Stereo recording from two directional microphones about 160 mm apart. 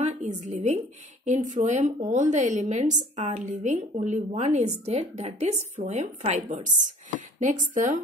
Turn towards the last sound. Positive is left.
turn(degrees=-55)  # may be behind; listen again after turning